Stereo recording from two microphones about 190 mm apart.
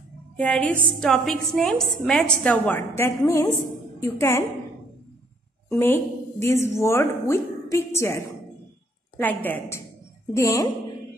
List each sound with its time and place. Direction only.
0.4 s a woman's voice: 5° left (ahead or behind)
5.7 s a woman's voice: 15° left (ahead or behind)